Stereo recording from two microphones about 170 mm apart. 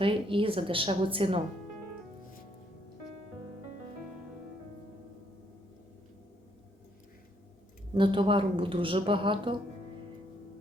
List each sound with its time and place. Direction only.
0.0 s a woman's voice: 30° right (ahead or behind)
7.9 s a woman's voice: 30° right (ahead or behind)